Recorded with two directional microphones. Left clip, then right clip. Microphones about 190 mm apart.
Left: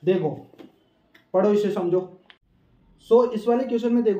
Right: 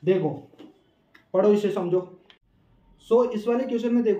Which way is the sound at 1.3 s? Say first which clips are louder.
Even; 10° left (ahead or behind).